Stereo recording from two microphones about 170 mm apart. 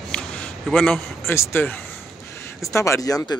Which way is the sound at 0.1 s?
5° left (ahead or behind).